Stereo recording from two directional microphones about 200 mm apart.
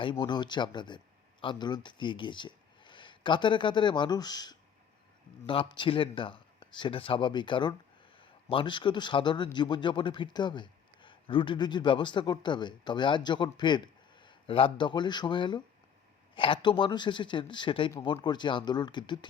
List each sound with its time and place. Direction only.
0.0 s speech: 25° left (ahead or behind)